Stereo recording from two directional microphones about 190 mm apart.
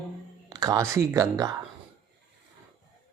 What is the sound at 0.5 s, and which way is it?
Speech, 20° right (ahead or behind).